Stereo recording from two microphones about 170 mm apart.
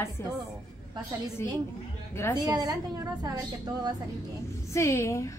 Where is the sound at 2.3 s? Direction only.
25° right (ahead or behind).